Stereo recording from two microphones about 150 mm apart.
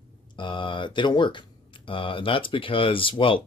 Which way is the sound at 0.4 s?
35° left (ahead or behind).